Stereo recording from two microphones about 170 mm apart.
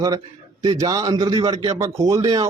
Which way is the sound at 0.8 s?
20° right (ahead or behind).